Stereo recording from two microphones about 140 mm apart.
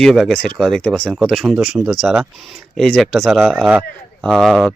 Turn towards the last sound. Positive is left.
turn(degrees=0)  # may be behind; listen again after turning